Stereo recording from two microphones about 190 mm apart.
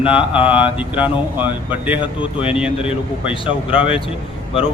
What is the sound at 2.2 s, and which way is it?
A man's voice, 30° left (ahead or behind).